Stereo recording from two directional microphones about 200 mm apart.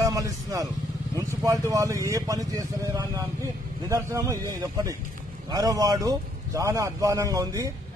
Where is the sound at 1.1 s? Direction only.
15° right (ahead or behind).